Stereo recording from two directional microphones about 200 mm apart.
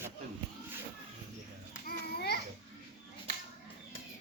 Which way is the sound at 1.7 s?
50° left (ahead or behind).